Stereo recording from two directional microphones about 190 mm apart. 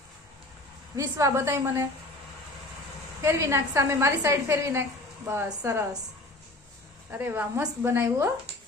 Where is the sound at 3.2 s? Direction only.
15° right (ahead or behind).